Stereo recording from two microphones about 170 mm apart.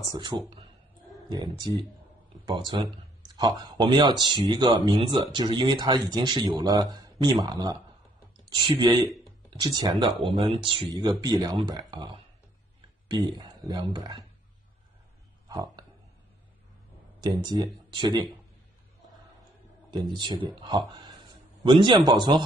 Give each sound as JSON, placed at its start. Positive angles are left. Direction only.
{"t": 0.0, "sound": "speech", "side_deg": -25}
{"t": 15.4, "sound": "a sound", "side_deg": -20}
{"t": 17.2, "sound": "speech", "side_deg": -25}
{"t": 19.9, "sound": "speech", "side_deg": -25}